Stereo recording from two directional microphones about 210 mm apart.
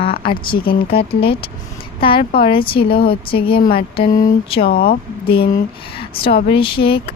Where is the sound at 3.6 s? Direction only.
45° left (ahead or behind).